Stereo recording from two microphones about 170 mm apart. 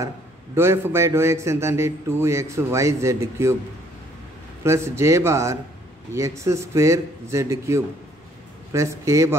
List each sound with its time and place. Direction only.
0.6 s a man's voice: 15° right (ahead or behind)
4.6 s a man's voice: 15° right (ahead or behind)